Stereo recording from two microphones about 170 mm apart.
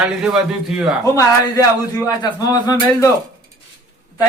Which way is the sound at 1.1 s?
20° left (ahead or behind).